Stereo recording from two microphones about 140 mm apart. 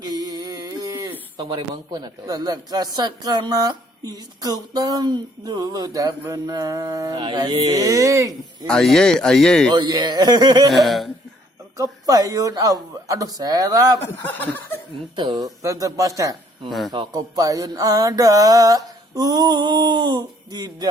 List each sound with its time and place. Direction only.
0.0 s a sound: 30° right (ahead or behind)
1.4 s speech: 35° right (ahead or behind)
8.3 s a man's voice: 5° left (ahead or behind)
9.7 s speech: 30° right (ahead or behind)
10.7 s a man's voice: centre (ahead or behind)
11.8 s speech: 25° right (ahead or behind)
14.2 s speech: 15° left (ahead or behind)
15.1 s speech: 30° right (ahead or behind)
16.6 s a man's voice: centre (ahead or behind)
16.9 s speech: 30° right (ahead or behind)